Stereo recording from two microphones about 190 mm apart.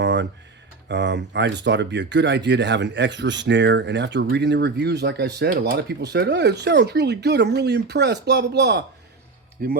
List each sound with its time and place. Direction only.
0.0 s a sound: 70° right (ahead or behind)
0.9 s speech: 70° right (ahead or behind)
9.6 s speech: 50° right (ahead or behind)